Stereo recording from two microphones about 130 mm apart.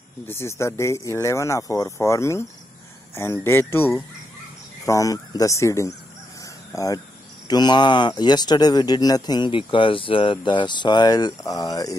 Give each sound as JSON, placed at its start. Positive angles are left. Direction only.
{"t": 0.3, "sound": "speech", "side_deg": 20}